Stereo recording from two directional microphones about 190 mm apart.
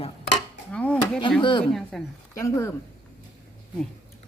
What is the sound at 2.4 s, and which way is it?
Speech, 15° left (ahead or behind).